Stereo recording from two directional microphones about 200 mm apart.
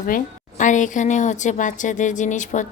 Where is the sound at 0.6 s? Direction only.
40° left (ahead or behind).